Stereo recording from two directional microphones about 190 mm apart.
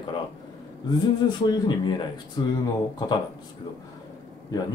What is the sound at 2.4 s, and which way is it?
Speech, 20° left (ahead or behind).